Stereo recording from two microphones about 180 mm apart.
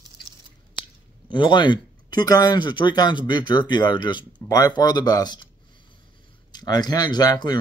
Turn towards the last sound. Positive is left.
turn(degrees=20)  # may be behind; listen again after turning